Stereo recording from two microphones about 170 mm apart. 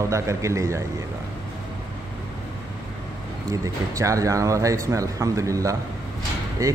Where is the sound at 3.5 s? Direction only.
20° right (ahead or behind).